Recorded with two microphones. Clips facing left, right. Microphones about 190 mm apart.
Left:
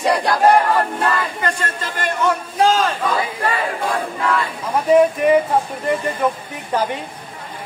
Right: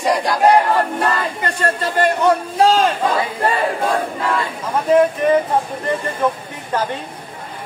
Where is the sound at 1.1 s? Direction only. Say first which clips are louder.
Even; 35° right (ahead or behind).